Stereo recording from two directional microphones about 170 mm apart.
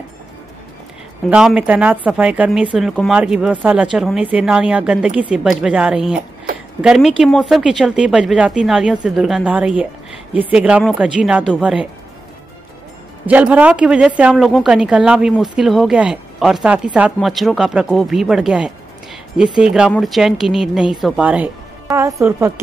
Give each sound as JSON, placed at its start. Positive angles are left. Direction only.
{"t": 1.2, "sound": "speech", "side_deg": -5}
{"t": 13.3, "sound": "speech", "side_deg": -10}